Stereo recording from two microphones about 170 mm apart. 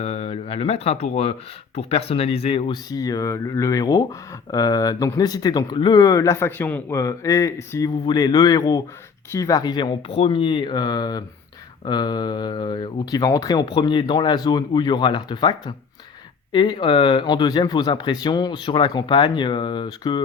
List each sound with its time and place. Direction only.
0.0 s speech: 40° left (ahead or behind)